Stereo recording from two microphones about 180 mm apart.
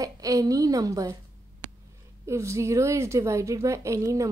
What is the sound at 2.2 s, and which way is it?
A woman's voice, 15° right (ahead or behind).